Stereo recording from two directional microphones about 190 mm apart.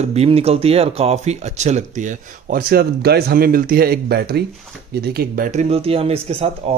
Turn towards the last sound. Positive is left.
turn(degrees=-30)  # may be behind; listen again after turning